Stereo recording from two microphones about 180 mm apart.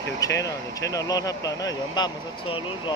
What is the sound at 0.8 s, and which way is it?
Speech, 20° left (ahead or behind).